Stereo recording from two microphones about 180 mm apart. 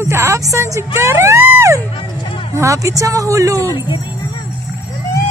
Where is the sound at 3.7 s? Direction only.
25° left (ahead or behind).